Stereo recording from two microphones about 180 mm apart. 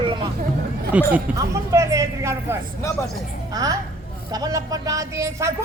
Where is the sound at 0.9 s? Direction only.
10° right (ahead or behind).